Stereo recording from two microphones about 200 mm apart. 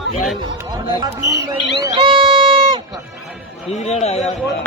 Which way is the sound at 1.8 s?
20° right (ahead or behind).